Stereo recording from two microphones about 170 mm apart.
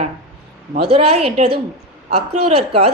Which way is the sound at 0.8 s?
35° right (ahead or behind).